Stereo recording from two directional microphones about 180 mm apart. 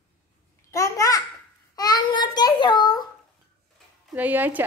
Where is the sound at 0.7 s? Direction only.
15° left (ahead or behind).